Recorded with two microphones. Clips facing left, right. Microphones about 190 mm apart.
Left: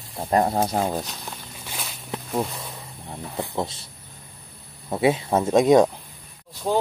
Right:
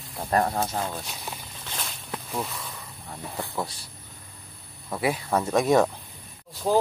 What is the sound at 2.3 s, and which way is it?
Speech, 30° left (ahead or behind).